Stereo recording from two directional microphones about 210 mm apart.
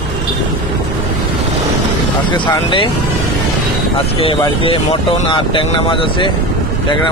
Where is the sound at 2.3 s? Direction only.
20° left (ahead or behind).